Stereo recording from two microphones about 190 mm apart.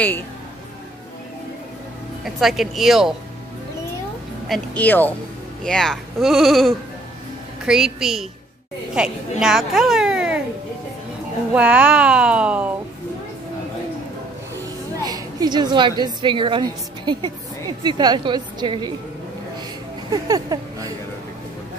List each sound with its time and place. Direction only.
2.2 s speech: centre (ahead or behind)
4.5 s a woman's voice: 10° left (ahead or behind)
11.5 s speech: 5° right (ahead or behind)
15.0 s a woman's voice: 20° right (ahead or behind)
20.1 s a woman's voice: 20° right (ahead or behind)